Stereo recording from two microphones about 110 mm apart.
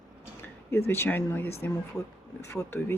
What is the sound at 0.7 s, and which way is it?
Speech, 20° left (ahead or behind).